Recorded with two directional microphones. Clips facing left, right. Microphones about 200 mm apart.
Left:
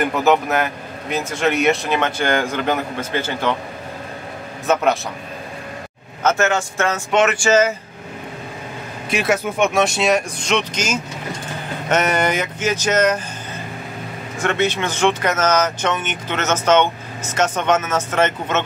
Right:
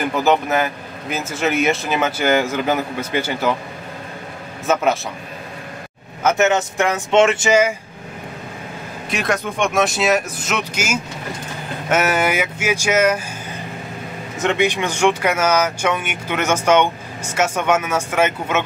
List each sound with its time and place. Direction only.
0.0 s speech: centre (ahead or behind)
4.7 s speech: centre (ahead or behind)
6.2 s speech: 20° right (ahead or behind)
9.1 s speech: 5° left (ahead or behind)
14.4 s speech: 15° right (ahead or behind)